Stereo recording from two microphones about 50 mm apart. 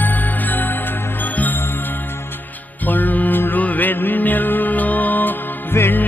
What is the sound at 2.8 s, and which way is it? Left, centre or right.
Music, left.